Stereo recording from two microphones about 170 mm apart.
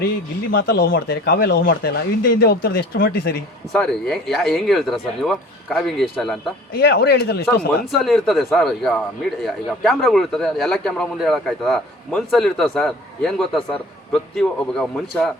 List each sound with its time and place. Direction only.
0.5 s speech: 90° left
0.9 s speech: 65° left (ahead or behind)
3.7 s a man's voice: 5° left (ahead or behind)
6.7 s speech: 65° left (ahead or behind)
7.9 s a man's voice: centre (ahead or behind)